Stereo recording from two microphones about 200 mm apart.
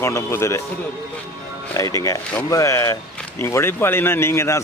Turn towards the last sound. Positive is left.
turn(degrees=15)  # may be behind; listen again after turning